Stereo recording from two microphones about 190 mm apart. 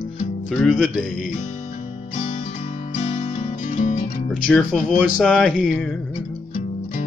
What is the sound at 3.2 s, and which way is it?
Music, 40° left (ahead or behind).